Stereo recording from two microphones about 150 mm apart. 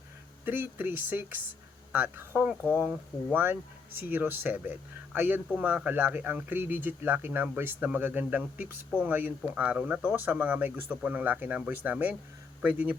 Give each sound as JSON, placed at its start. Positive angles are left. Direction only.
{"t": 0.4, "sound": "speech", "side_deg": -15}